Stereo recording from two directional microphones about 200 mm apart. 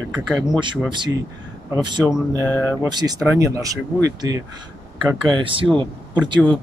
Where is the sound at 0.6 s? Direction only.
25° right (ahead or behind).